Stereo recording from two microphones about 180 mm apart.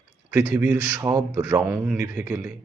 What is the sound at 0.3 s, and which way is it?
Speech, 15° right (ahead or behind).